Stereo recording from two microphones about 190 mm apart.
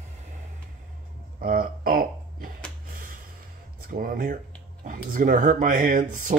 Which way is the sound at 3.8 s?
50° right (ahead or behind).